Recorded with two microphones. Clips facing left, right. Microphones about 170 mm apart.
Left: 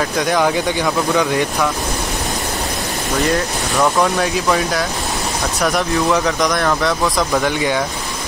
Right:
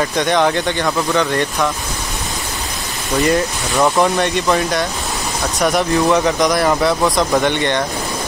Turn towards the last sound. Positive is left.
turn(degrees=5)  # may be behind; listen again after turning